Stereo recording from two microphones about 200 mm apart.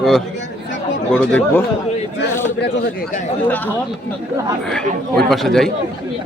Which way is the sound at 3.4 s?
10° left (ahead or behind).